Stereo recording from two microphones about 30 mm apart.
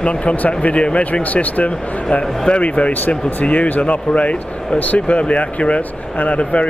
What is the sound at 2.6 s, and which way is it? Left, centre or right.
Speech, left.